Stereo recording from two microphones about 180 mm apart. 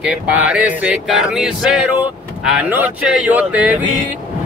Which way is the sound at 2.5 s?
10° right (ahead or behind).